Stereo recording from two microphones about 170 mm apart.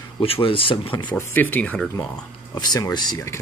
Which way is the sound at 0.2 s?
30° left (ahead or behind).